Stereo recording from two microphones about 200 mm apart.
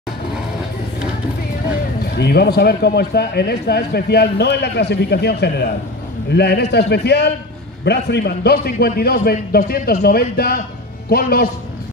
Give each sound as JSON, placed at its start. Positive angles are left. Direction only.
{"t": 2.0, "sound": "a man's voice", "side_deg": 55}